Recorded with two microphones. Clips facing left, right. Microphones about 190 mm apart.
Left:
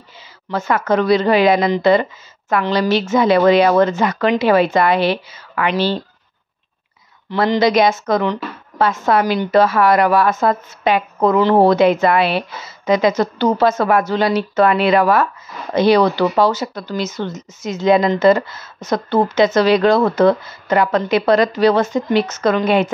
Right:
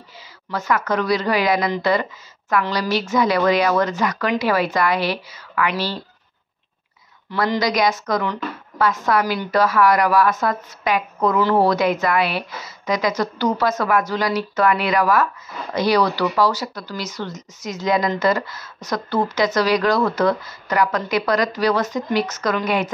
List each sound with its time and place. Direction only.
0.5 s speech: 25° left (ahead or behind)
7.2 s speech: 25° left (ahead or behind)